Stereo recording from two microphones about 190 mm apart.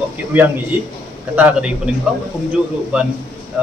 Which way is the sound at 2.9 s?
5° right (ahead or behind).